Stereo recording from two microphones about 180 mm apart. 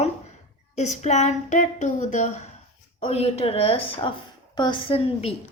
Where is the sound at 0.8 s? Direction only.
40° left (ahead or behind).